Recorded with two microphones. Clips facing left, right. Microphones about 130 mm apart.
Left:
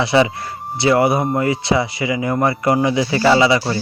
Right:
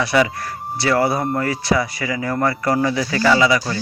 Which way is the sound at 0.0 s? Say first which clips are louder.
Left 2 dB; 25° left (ahead or behind).